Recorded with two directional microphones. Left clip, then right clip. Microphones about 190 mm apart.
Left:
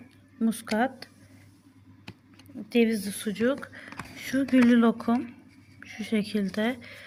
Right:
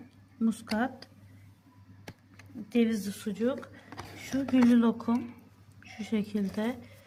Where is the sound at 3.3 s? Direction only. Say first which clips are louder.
Left 4 dB; 20° left (ahead or behind).